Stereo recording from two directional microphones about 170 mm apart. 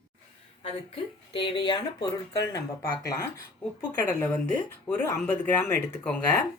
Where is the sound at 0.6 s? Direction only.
35° left (ahead or behind).